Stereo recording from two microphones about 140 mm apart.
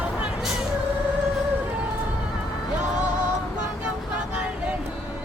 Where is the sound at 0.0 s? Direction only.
10° right (ahead or behind).